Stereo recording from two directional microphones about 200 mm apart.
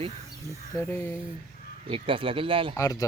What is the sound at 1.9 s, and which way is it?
Speech, 25° right (ahead or behind).